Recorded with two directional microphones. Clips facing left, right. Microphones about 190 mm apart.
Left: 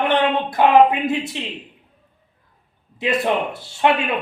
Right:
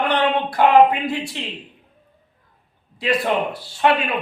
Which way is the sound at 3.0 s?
25° left (ahead or behind).